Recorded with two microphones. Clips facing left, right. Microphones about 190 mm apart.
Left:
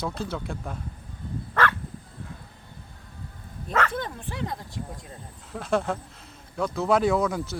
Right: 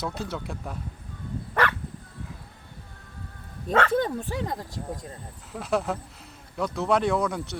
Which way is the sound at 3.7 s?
30° right (ahead or behind).